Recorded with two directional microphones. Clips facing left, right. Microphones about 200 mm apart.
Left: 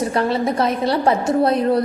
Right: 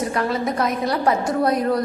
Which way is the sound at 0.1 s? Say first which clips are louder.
Left 3 dB; 30° left (ahead or behind).